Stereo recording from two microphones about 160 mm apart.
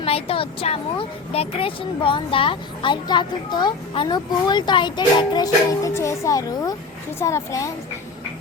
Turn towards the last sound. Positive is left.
turn(degrees=20)  # may be behind; listen again after turning